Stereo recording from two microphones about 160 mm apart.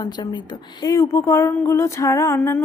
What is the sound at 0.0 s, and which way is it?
A woman's voice, 25° left (ahead or behind).